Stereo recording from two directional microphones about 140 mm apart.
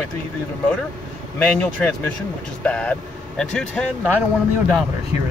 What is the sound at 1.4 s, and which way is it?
Speech, 10° left (ahead or behind).